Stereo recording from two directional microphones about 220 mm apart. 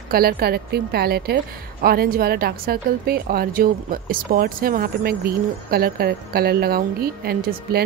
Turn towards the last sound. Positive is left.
turn(degrees=-45)  # may be behind; listen again after turning